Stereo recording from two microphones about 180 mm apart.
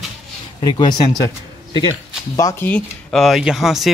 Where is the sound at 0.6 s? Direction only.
25° left (ahead or behind).